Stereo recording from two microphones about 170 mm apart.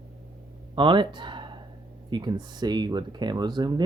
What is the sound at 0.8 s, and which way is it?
Speech, 30° right (ahead or behind).